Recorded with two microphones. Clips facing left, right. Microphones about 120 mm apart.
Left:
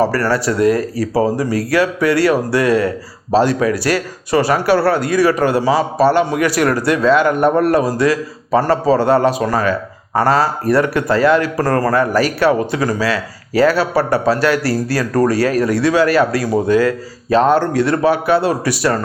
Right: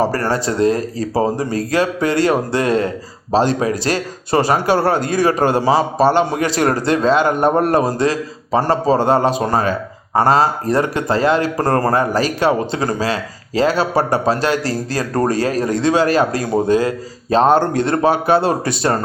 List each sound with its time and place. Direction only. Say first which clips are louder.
0.0 s a man's voice: left 2 dB; 20° right (ahead or behind)